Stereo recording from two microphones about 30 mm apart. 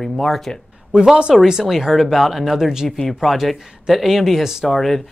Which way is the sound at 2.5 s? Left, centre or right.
Centre.